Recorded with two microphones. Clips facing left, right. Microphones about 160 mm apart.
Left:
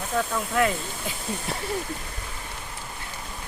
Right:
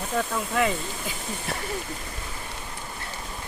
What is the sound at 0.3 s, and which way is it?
Speech, centre (ahead or behind).